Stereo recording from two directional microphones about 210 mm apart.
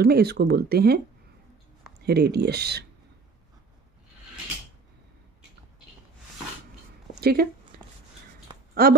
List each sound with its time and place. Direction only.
0.0 s speech: 50° right (ahead or behind)
2.0 s speech: 50° right (ahead or behind)
7.2 s speech: 50° right (ahead or behind)
7.7 s chopping: 45° right (ahead or behind)
8.8 s speech: 45° right (ahead or behind)